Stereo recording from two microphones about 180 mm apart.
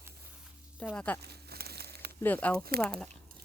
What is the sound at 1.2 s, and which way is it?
Crumpling, 60° right (ahead or behind).